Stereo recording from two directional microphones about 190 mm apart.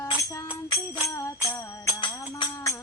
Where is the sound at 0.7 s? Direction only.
15° left (ahead or behind).